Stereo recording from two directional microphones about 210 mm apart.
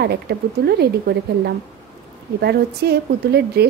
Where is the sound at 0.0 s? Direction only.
50° right (ahead or behind).